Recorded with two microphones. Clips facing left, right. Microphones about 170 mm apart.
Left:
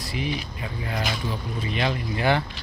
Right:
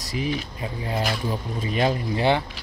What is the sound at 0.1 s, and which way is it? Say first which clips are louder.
Speech: right 3 dB; 40° right (ahead or behind).